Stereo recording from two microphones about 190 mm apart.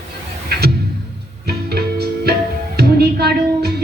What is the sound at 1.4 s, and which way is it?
Music, 55° right (ahead or behind).